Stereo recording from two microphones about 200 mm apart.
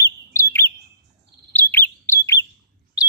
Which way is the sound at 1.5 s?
10° left (ahead or behind).